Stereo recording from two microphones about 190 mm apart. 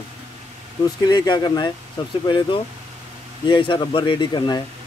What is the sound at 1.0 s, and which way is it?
Speech, 20° left (ahead or behind).